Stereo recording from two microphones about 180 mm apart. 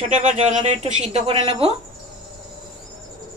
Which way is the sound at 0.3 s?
40° right (ahead or behind).